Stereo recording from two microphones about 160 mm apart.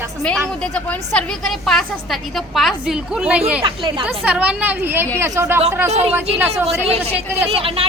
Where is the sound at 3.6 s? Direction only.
30° right (ahead or behind).